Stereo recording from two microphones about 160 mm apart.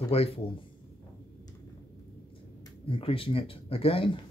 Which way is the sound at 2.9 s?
35° left (ahead or behind).